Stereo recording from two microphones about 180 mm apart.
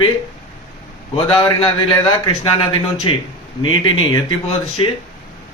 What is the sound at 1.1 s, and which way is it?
A man's voice, 30° left (ahead or behind).